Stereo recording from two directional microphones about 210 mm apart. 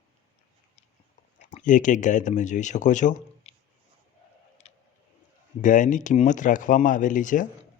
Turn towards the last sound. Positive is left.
turn(degrees=40)  # may be behind; listen again after turning